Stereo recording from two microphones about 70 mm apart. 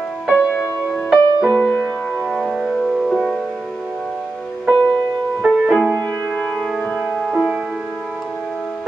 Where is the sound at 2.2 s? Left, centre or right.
Centre.